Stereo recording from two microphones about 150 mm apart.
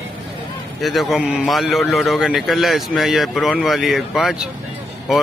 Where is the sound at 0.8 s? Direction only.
Centre (ahead or behind).